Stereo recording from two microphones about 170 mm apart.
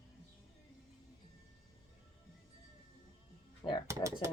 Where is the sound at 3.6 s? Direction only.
25° left (ahead or behind).